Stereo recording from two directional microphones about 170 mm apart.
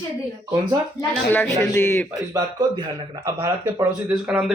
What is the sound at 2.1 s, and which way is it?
Speech, 25° right (ahead or behind).